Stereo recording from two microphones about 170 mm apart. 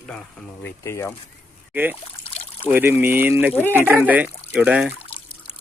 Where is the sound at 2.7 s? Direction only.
10° right (ahead or behind).